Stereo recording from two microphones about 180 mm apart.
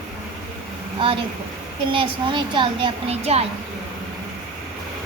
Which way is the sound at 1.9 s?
25° right (ahead or behind).